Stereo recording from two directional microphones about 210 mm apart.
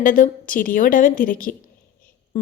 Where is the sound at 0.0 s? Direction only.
40° left (ahead or behind).